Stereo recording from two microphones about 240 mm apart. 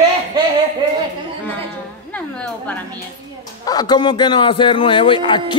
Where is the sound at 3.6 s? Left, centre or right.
Centre.